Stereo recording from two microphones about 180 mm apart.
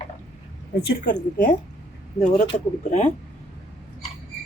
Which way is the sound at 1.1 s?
45° left (ahead or behind).